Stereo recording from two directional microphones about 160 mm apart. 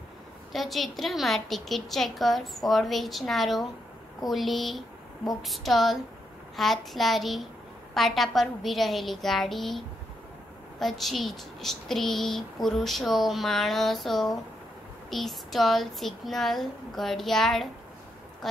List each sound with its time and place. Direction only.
0.5 s a woman's voice: centre (ahead or behind)